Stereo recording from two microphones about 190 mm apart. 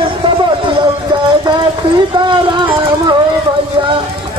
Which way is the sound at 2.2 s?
25° right (ahead or behind).